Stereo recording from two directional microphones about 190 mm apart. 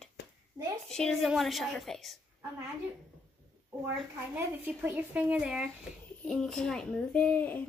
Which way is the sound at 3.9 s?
10° right (ahead or behind).